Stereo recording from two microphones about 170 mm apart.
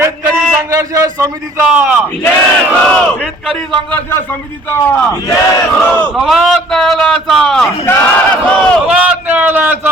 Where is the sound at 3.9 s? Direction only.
10° left (ahead or behind).